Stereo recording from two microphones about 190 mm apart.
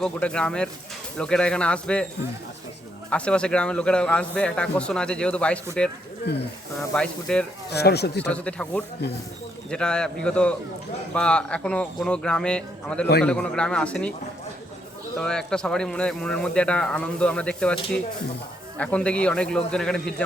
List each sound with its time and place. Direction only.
0.0 s speech: 5° left (ahead or behind)
3.1 s speech: 5° left (ahead or behind)
6.3 s speech: 60° left (ahead or behind)
6.9 s speech: 5° left (ahead or behind)
7.7 s speech: 60° left (ahead or behind)
8.2 s speech: 5° left (ahead or behind)
15.2 s speech: 5° left (ahead or behind)
18.8 s speech: 5° left (ahead or behind)